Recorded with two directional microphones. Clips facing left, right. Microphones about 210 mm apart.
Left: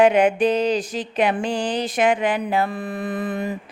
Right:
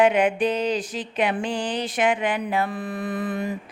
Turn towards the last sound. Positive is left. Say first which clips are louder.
# left 1 dB
turn(degrees=20)  # may be behind; listen again after turning